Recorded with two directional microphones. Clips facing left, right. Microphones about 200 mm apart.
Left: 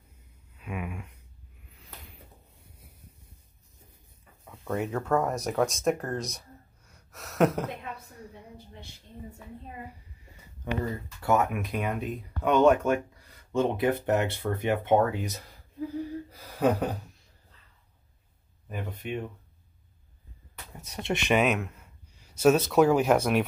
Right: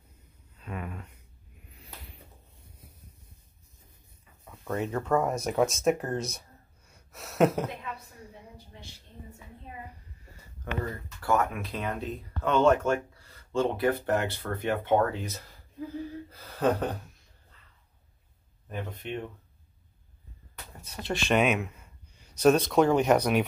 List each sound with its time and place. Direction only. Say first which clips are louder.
0.6 s a sound: left 2 dB; 10° left (ahead or behind)
4.9 s speech: right 1 dB; centre (ahead or behind)
6.9 s a sound: right 1 dB; centre (ahead or behind)
10.6 s speech: left 3 dB; 20° left (ahead or behind)
16.3 s gasp: left 1 dB; 15° left (ahead or behind)
18.7 s speech: left 1 dB; 5° left (ahead or behind)
20.8 s speech: left 2 dB; 25° left (ahead or behind)
21.3 s speech: even; centre (ahead or behind)